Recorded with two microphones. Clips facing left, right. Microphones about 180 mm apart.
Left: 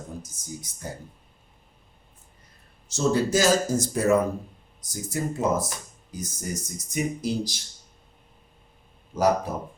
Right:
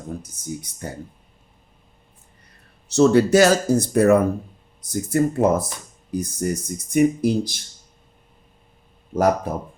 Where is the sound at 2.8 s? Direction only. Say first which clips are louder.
Right 9 dB; 65° right (ahead or behind).